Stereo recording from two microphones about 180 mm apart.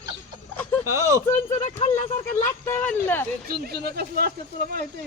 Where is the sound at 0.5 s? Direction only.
10° left (ahead or behind).